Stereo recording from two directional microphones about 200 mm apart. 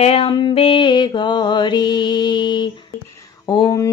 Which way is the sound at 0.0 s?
30° left (ahead or behind).